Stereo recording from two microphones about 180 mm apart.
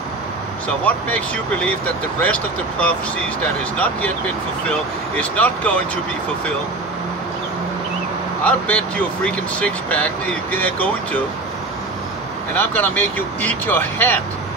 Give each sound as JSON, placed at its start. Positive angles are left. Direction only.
{"t": 0.8, "sound": "speech", "side_deg": 10}
{"t": 5.1, "sound": "speech", "side_deg": 10}
{"t": 8.5, "sound": "speech", "side_deg": 5}
{"t": 12.5, "sound": "speech", "side_deg": 10}